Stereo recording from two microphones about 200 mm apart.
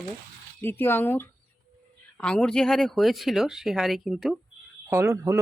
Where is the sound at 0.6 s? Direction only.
10° left (ahead or behind).